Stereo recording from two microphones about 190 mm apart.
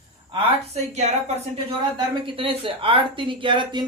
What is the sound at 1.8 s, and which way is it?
Speech, 25° right (ahead or behind).